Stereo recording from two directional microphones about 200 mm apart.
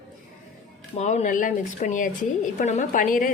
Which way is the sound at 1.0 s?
35° left (ahead or behind).